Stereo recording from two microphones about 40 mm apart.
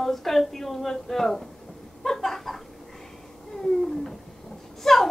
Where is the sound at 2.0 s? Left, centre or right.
Centre.